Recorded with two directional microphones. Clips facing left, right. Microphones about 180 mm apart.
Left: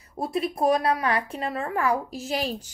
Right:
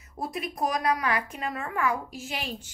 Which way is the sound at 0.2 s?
30° left (ahead or behind).